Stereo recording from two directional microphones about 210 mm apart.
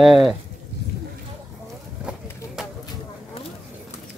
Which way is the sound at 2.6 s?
Centre (ahead or behind).